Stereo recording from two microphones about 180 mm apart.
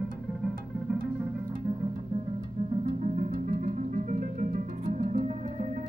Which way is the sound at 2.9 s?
40° right (ahead or behind).